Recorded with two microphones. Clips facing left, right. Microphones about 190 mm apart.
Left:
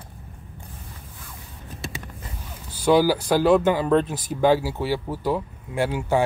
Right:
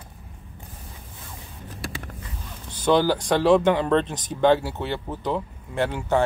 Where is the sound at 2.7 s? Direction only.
10° left (ahead or behind).